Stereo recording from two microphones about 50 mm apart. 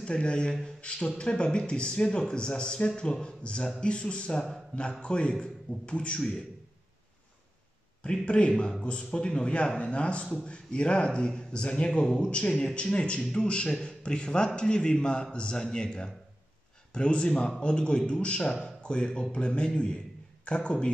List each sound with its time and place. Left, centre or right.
0.0 s a man's voice: centre
8.0 s a man's voice: left